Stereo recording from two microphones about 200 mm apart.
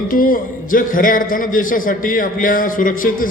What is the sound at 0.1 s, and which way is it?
Speech, 45° left (ahead or behind).